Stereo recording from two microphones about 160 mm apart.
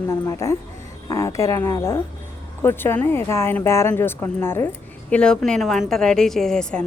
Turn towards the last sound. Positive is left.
turn(degrees=5)  # may be behind; listen again after turning